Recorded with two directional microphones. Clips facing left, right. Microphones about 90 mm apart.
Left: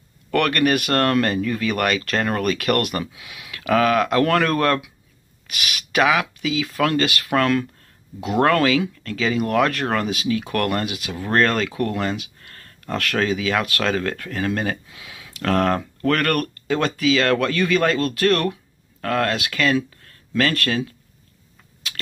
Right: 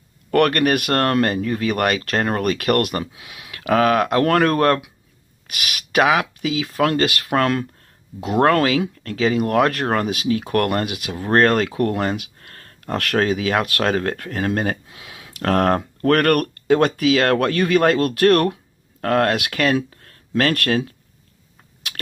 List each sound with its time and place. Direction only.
0.3 s speech: 45° right (ahead or behind)
11.1 s speech: 35° right (ahead or behind); by 20.8 s 55° right (ahead or behind)